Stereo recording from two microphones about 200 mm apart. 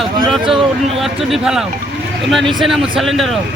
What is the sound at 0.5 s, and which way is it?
A man's voice, centre (ahead or behind).